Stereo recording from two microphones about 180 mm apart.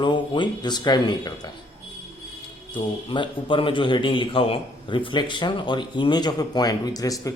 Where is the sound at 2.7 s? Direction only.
30° left (ahead or behind).